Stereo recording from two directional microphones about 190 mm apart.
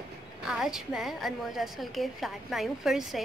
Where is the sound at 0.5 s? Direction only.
Centre (ahead or behind).